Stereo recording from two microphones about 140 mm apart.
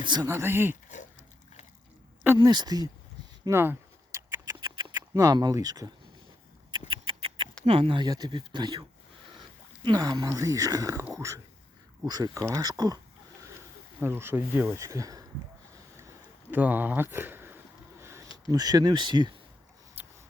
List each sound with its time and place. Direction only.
0.0 s speech: 30° right (ahead or behind)
0.3 s speech: 20° right (ahead or behind)
2.4 s speech: 30° right (ahead or behind)
3.4 s a sound: 15° right (ahead or behind)
4.4 s rodents: 30° right (ahead or behind)
5.1 s speech: 25° right (ahead or behind)
6.7 s rodents: 35° right (ahead or behind)
7.6 s speech: 40° right (ahead or behind)
9.8 s speech: 30° right (ahead or behind)
14.0 s speech: 15° right (ahead or behind)
16.5 s speech: 10° right (ahead or behind)
18.0 s a sound: 20° right (ahead or behind)
18.5 s speech: 30° right (ahead or behind)
20.0 s a sound: 15° right (ahead or behind)